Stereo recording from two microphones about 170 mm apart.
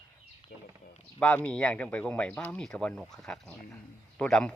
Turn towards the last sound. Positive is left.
turn(degrees=5)  # may be behind; listen again after turning